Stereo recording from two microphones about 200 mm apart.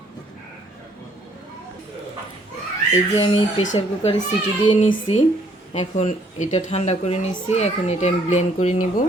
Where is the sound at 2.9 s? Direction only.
30° left (ahead or behind).